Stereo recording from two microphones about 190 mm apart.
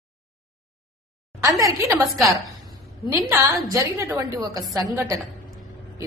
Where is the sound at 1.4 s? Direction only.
15° right (ahead or behind).